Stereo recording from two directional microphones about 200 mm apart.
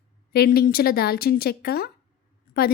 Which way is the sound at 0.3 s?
50° left (ahead or behind).